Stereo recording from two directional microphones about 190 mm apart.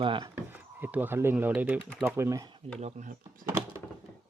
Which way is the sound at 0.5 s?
10° right (ahead or behind).